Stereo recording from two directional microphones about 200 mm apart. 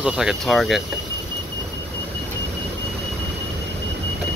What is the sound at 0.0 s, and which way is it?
Speech, centre (ahead or behind).